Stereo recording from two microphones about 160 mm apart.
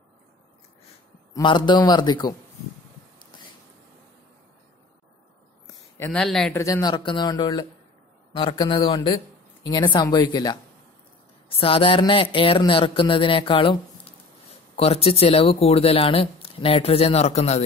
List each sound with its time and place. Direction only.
1.3 s speech: 30° left (ahead or behind)
5.9 s speech: 15° left (ahead or behind)
6.2 s speech: centre (ahead or behind)
6.5 s speech: 20° left (ahead or behind); by 17.6 s 45° left (ahead or behind)